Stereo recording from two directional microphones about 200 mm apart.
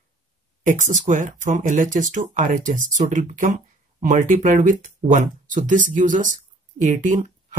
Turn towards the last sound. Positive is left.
turn(degrees=-40)  # may be behind; listen again after turning